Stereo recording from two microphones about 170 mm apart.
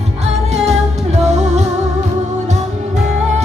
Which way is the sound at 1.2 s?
40° right (ahead or behind).